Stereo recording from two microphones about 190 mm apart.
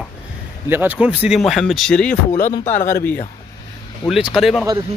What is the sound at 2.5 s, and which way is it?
Speech, 35° left (ahead or behind).